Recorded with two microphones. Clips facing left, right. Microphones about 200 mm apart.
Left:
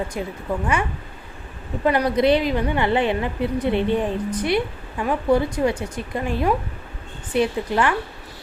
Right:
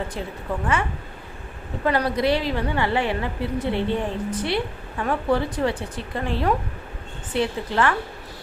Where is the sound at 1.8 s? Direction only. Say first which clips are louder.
Left 3 dB; 20° left (ahead or behind).